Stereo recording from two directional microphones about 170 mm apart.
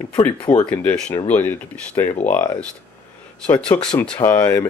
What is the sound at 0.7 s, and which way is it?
Speech, 5° left (ahead or behind).